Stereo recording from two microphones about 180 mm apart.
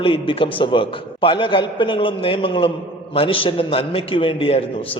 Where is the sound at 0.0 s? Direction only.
30° left (ahead or behind).